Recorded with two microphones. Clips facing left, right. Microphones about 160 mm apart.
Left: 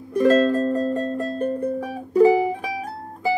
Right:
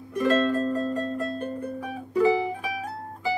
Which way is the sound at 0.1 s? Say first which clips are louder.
Left 6 dB; 35° left (ahead or behind).